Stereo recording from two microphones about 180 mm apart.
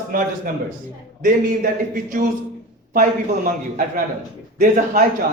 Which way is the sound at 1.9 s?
50° right (ahead or behind).